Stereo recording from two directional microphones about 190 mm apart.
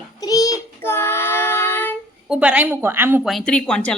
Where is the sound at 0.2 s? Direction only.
20° left (ahead or behind).